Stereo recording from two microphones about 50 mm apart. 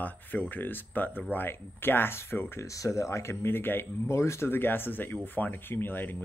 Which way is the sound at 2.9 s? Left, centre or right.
Left.